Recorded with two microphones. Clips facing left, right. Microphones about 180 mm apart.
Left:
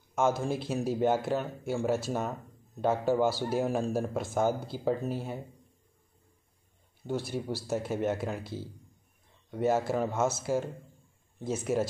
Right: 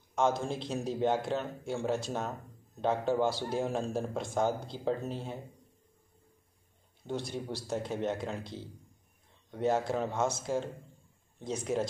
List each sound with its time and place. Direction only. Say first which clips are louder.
0.1 s speech: left 2 dB; 5° left (ahead or behind)
7.1 s speech: left 3 dB; 5° left (ahead or behind)